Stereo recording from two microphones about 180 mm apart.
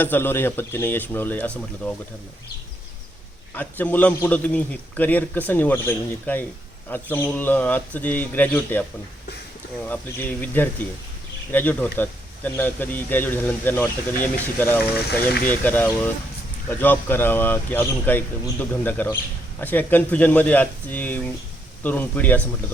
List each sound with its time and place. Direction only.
0.0 s speech: 10° left (ahead or behind)
3.5 s speech: 10° left (ahead or behind)
9.8 s speech: 10° left (ahead or behind)